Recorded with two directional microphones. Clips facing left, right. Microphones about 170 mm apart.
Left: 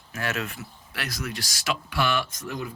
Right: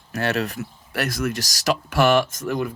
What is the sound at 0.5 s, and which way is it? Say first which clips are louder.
Speech: right 10 dB; 50° right (ahead or behind).